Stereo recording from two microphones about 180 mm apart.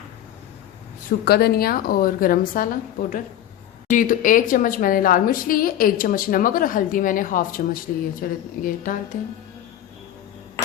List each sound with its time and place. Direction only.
1.2 s a woman's voice: 60° left (ahead or behind)